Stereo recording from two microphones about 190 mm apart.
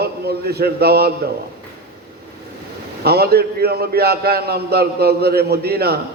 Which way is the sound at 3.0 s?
55° right (ahead or behind).